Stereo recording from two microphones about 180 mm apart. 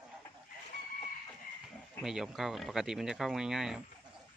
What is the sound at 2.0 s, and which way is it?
Speech, 5° right (ahead or behind).